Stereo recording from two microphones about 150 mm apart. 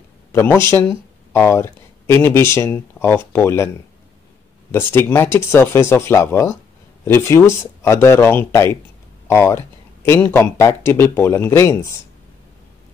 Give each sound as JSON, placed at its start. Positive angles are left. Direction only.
{"t": 0.3, "sound": "speech", "side_deg": 15}